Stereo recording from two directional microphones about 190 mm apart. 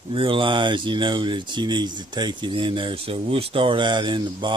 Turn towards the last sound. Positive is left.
turn(degrees=-25)  # may be behind; listen again after turning